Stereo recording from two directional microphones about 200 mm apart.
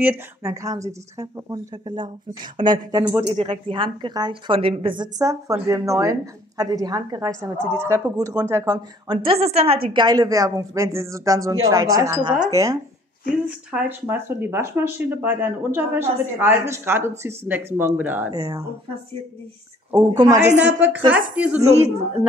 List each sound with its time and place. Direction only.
0.0 s a woman's voice: 10° right (ahead or behind)
19.9 s a woman's voice: 20° right (ahead or behind)
20.5 s a woman's voice: 5° right (ahead or behind)
21.5 s speech: 30° right (ahead or behind)